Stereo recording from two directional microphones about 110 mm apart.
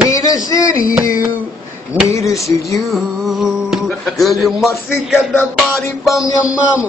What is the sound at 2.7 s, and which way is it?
Music, centre (ahead or behind).